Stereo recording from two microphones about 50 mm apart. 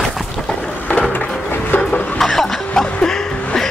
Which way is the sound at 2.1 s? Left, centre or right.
Centre.